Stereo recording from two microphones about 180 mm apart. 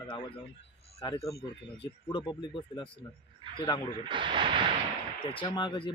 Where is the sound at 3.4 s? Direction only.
30° right (ahead or behind).